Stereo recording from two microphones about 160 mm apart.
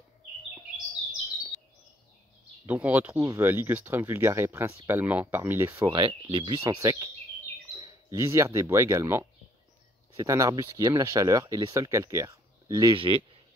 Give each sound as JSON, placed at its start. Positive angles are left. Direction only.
{"t": 2.6, "sound": "speech", "side_deg": -10}
{"t": 5.9, "sound": "speech", "side_deg": -30}